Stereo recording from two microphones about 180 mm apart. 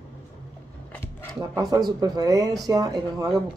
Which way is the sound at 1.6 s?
20° right (ahead or behind).